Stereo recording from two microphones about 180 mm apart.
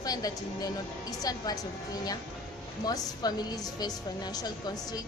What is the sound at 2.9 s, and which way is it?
A woman's voice, 20° left (ahead or behind).